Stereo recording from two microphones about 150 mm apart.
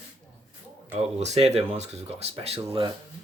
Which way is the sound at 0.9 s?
45° right (ahead or behind).